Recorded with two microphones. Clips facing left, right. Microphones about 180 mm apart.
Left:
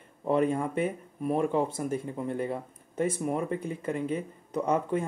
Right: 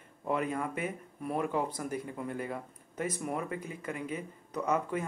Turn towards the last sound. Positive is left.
turn(degrees=30)  # may be behind; listen again after turning